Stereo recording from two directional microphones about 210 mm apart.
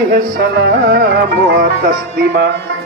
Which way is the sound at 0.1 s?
50° right (ahead or behind).